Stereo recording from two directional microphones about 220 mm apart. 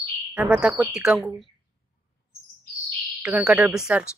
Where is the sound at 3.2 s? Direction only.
5° right (ahead or behind).